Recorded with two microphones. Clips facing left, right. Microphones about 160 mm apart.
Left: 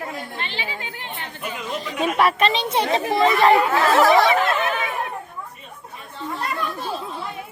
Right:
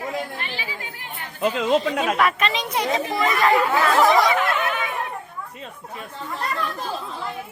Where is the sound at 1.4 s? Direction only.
90° right.